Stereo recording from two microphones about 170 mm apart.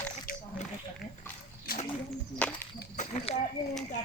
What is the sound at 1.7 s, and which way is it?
Bird, 60° left (ahead or behind).